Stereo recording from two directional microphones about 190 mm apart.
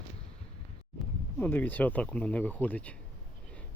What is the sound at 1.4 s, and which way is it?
Speech, 10° left (ahead or behind).